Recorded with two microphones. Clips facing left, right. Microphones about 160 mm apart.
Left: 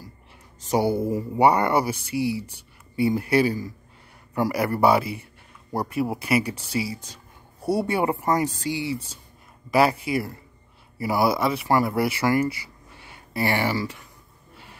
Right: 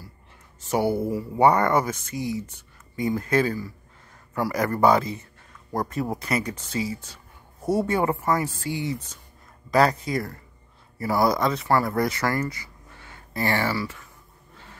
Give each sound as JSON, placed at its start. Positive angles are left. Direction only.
{"t": 0.7, "sound": "speech", "side_deg": 15}
{"t": 9.7, "sound": "speech", "side_deg": 10}
{"t": 12.9, "sound": "a sound", "side_deg": 15}